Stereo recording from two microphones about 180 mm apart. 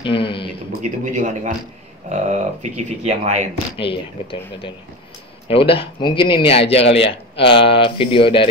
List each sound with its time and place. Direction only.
0.0 s a sound: 30° left (ahead or behind)
1.1 s a man's voice: 45° right (ahead or behind)
3.7 s speech: 30° left (ahead or behind)